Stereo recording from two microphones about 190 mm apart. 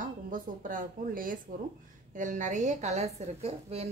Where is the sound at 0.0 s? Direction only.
45° right (ahead or behind).